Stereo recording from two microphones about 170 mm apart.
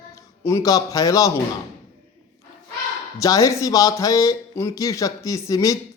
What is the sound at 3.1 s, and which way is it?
Speech, 20° left (ahead or behind).